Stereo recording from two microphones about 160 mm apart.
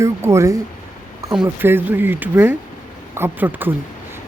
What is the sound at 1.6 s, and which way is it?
A woman's voice, 15° right (ahead or behind).